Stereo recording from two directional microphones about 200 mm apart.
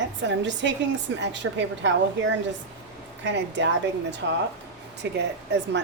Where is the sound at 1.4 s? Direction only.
90° right.